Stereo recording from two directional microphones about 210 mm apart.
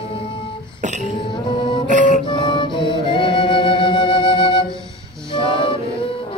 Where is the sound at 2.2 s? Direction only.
20° left (ahead or behind).